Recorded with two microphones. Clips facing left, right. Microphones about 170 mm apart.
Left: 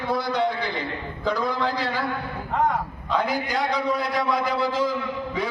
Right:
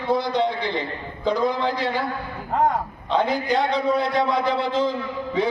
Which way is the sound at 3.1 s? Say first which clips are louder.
Right 4 dB; 25° right (ahead or behind).